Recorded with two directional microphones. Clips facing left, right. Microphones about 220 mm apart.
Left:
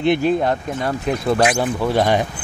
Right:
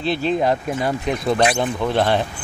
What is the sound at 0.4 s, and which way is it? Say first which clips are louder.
Speech: right 1 dB; 5° right (ahead or behind).